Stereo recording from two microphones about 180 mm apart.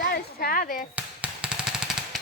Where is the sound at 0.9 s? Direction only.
5° right (ahead or behind).